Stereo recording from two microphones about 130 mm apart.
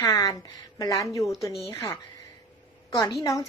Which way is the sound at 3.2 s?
25° left (ahead or behind).